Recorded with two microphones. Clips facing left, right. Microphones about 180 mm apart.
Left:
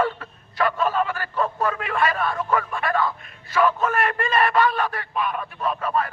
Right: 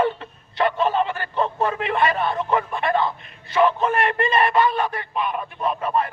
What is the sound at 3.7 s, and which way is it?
Speech, 25° right (ahead or behind).